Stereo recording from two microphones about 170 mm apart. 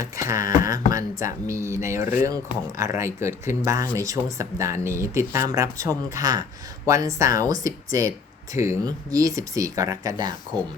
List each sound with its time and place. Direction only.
0.3 s speech: 20° right (ahead or behind)